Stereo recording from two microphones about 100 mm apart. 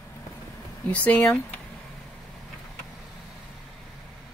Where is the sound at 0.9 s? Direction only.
15° left (ahead or behind).